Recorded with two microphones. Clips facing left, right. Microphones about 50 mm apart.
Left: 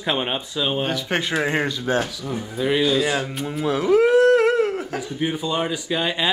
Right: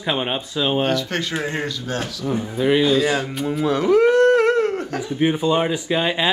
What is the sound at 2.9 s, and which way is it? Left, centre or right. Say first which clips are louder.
Speech: right 2 dB; centre.